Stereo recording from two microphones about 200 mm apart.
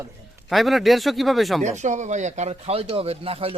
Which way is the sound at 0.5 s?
Centre (ahead or behind).